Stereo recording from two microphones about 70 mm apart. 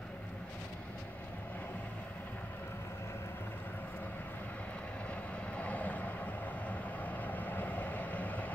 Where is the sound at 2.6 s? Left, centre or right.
Left.